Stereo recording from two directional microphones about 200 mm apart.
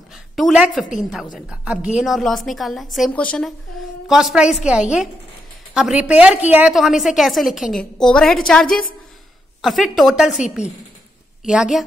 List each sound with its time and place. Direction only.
0.4 s a woman's voice: centre (ahead or behind)
8.6 s a woman's voice: 45° left (ahead or behind)
9.6 s a woman's voice: centre (ahead or behind)
11.4 s a woman's voice: 5° right (ahead or behind)